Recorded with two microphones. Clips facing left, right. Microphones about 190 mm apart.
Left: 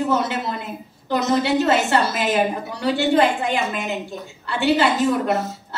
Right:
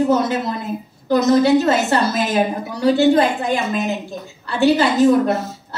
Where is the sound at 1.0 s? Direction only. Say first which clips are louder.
Right 6 dB; 40° right (ahead or behind).